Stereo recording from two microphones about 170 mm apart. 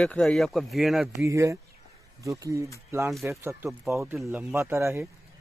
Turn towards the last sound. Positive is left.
turn(degrees=-15)  # may be behind; listen again after turning